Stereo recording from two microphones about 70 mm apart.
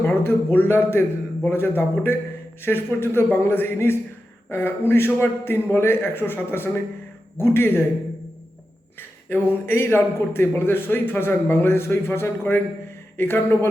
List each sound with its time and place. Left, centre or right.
0.0 s a man's voice: left
9.0 s a man's voice: left